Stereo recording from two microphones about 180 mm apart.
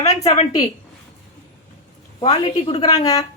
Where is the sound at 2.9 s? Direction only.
20° left (ahead or behind).